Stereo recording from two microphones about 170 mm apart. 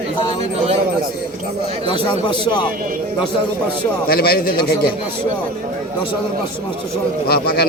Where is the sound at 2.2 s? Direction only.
30° left (ahead or behind).